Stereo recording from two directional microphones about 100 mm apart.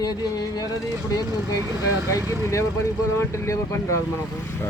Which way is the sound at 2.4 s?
30° left (ahead or behind).